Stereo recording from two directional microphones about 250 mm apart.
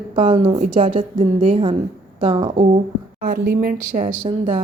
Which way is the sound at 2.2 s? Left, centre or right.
Centre.